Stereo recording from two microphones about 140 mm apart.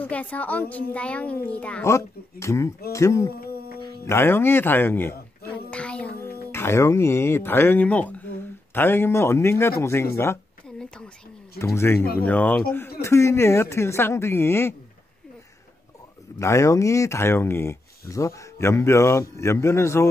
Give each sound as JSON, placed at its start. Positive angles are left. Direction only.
{"t": 0.0, "sound": "a child's voice", "side_deg": 10}
{"t": 1.9, "sound": "speech", "side_deg": 20}
{"t": 4.0, "sound": "a sound", "side_deg": 20}
{"t": 6.1, "sound": "a child's voice", "side_deg": 20}
{"t": 11.5, "sound": "a child's voice", "side_deg": 20}
{"t": 16.3, "sound": "speech", "side_deg": 20}